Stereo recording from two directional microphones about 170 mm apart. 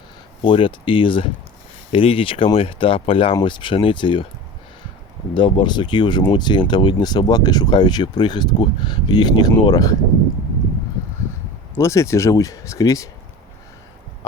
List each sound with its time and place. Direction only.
0.4 s speech: 30° left (ahead or behind)
5.3 s speech: 30° left (ahead or behind)
11.7 s speech: 15° left (ahead or behind)